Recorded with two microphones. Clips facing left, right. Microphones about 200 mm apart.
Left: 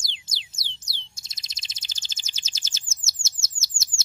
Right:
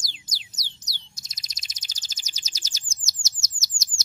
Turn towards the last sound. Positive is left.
turn(degrees=25)  # may be behind; listen again after turning